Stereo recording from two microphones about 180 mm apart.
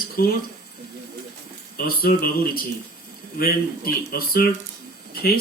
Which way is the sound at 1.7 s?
55° left (ahead or behind).